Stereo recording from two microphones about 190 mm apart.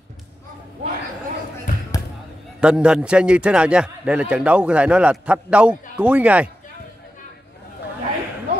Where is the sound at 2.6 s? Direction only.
5° right (ahead or behind).